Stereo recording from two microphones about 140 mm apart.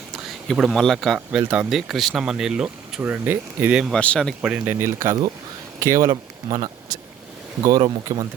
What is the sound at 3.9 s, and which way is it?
Speech, 5° left (ahead or behind).